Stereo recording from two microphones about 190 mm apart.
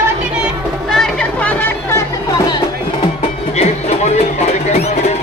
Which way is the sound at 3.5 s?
35° left (ahead or behind).